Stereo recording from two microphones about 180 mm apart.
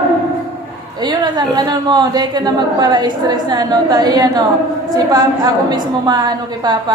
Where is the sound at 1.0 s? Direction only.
25° right (ahead or behind).